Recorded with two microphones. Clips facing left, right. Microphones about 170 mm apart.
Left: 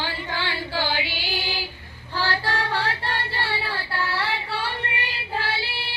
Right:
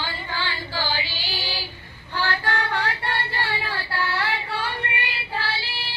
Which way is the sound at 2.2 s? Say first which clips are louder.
Even; 30° left (ahead or behind).